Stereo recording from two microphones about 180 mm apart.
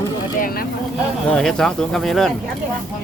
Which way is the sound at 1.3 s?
5° left (ahead or behind).